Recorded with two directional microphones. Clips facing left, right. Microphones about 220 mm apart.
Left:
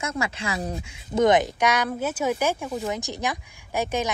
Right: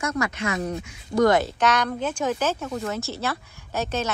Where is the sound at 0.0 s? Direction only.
25° left (ahead or behind).